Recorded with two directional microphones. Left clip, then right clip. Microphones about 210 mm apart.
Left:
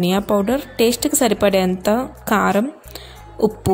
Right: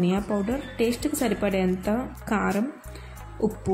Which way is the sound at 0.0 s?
40° left (ahead or behind).